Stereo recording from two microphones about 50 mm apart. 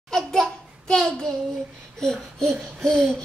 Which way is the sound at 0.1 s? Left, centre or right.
Centre.